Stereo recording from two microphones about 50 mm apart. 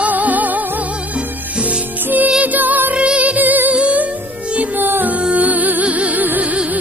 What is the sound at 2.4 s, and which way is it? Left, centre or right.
Music, right.